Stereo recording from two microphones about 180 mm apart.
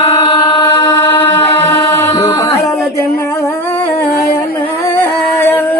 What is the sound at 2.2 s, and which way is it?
Music, 25° left (ahead or behind).